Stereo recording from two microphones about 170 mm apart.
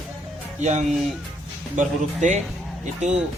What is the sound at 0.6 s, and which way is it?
A man's voice, 45° right (ahead or behind).